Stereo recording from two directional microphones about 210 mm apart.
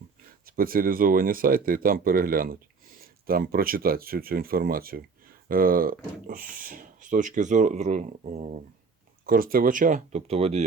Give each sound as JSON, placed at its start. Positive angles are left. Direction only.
{"t": 0.4, "sound": "speech", "side_deg": -45}